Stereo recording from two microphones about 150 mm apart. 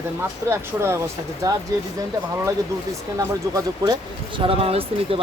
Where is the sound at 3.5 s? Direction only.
30° right (ahead or behind).